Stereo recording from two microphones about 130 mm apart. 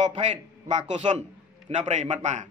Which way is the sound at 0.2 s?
65° right (ahead or behind).